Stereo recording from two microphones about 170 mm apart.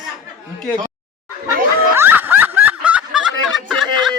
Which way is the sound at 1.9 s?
10° right (ahead or behind).